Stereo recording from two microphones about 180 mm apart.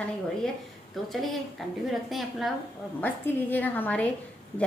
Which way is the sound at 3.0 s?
10° left (ahead or behind).